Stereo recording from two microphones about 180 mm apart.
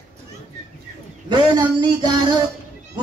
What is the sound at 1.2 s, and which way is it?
Speech, 25° right (ahead or behind).